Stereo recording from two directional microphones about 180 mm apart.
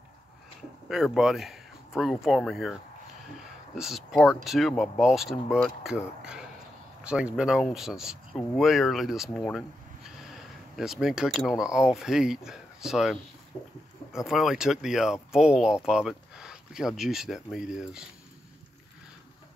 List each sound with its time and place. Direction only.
0.8 s speech: centre (ahead or behind)